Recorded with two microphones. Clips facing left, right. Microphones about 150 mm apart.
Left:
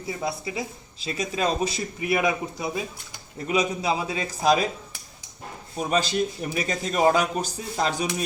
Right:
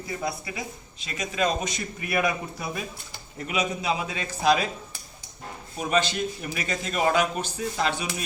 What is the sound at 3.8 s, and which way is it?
Speech, 35° left (ahead or behind).